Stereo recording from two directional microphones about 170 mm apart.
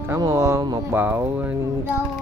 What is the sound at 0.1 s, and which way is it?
Speech, 20° right (ahead or behind).